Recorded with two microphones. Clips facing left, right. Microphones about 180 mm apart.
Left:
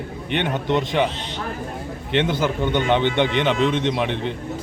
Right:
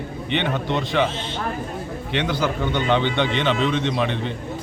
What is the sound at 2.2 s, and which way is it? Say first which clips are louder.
A man's voice: left 2 dB; 20° left (ahead or behind).